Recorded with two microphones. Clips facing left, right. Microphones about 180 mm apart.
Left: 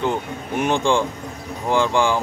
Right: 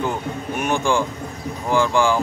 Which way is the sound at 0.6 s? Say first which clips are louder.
Left 2 dB; 20° left (ahead or behind).